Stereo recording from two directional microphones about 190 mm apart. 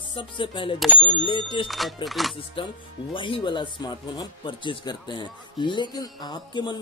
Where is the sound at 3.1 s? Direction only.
25° left (ahead or behind).